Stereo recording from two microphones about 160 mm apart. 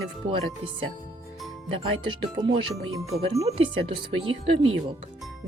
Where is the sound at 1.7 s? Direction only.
35° right (ahead or behind).